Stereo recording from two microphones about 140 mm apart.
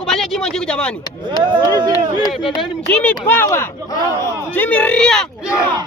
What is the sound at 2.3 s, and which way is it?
Speech, centre (ahead or behind).